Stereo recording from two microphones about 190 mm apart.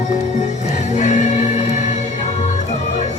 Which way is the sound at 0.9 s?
40° left (ahead or behind).